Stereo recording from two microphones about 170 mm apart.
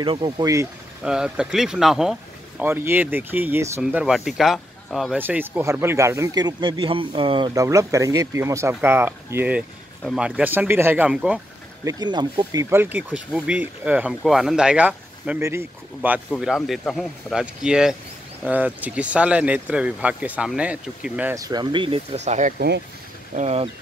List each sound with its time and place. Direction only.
0.0 s speech: 25° right (ahead or behind)
1.0 s speech: 5° right (ahead or behind)
3.8 s speech: 5° right (ahead or behind)
5.2 s speech: 10° right (ahead or behind)
11.8 s speech: 25° right (ahead or behind)
12.6 s speech: 10° right (ahead or behind)
16.3 s speech: centre (ahead or behind)
21.4 s speech: 25° right (ahead or behind); by 23.7 s 40° right (ahead or behind)